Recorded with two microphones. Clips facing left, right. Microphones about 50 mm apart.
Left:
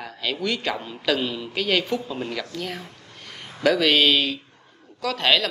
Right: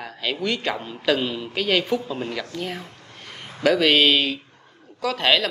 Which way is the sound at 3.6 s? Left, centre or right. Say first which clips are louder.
Right 1 dB; centre.